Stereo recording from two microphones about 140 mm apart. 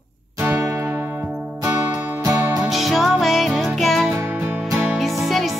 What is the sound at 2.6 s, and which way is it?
Music, centre (ahead or behind).